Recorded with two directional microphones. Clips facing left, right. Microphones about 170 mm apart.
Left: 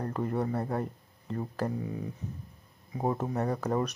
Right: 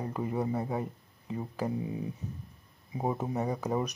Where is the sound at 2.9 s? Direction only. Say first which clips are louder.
Left 1 dB; 5° right (ahead or behind).